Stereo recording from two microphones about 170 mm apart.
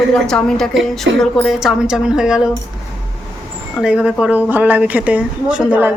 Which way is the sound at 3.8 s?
5° right (ahead or behind).